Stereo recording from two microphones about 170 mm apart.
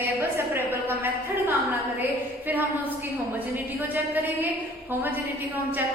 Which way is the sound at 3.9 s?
10° right (ahead or behind).